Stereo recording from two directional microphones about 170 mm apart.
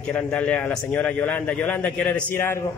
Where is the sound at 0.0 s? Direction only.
10° left (ahead or behind).